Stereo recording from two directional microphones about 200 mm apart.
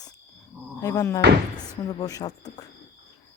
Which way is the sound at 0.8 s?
15° left (ahead or behind).